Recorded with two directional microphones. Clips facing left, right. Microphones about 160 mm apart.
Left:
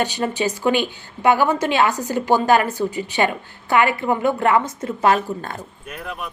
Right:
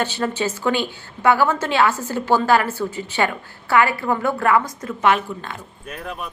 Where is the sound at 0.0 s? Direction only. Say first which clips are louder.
Left 1 dB; 15° left (ahead or behind); by 5.6 s 40° left (ahead or behind).